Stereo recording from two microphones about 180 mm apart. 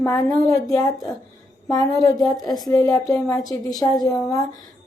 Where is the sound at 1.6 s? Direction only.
20° left (ahead or behind).